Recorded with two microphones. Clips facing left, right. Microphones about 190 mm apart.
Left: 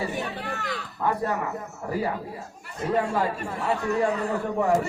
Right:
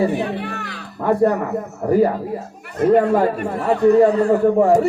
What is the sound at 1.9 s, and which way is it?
A man's voice, 50° right (ahead or behind).